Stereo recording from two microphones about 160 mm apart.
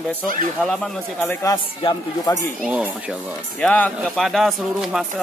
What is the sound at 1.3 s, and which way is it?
A man's voice, 20° left (ahead or behind).